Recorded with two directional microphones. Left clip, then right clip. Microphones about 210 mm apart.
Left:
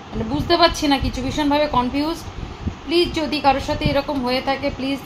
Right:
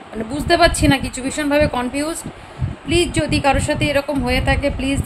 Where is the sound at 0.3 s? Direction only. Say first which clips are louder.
Right 2 dB; 20° right (ahead or behind).